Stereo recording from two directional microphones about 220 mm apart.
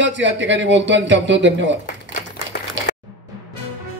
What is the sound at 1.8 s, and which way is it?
Typewriter, 40° left (ahead or behind).